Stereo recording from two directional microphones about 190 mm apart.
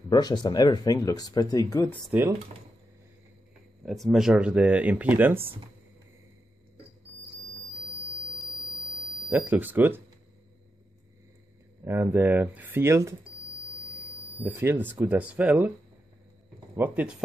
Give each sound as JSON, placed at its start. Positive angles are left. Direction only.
{"t": 0.1, "sound": "speech", "side_deg": 20}
{"t": 3.8, "sound": "speech", "side_deg": 0}
{"t": 9.3, "sound": "speech", "side_deg": -10}
{"t": 11.8, "sound": "speech", "side_deg": -10}
{"t": 14.4, "sound": "speech", "side_deg": -10}
{"t": 16.7, "sound": "speech", "side_deg": -10}